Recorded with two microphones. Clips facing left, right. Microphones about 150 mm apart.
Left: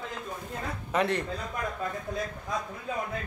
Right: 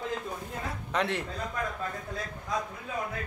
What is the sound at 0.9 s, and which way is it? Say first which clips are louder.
Speech: left 3 dB; centre (ahead or behind).